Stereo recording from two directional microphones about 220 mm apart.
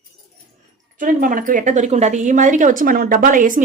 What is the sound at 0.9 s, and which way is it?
A woman's voice, 40° right (ahead or behind).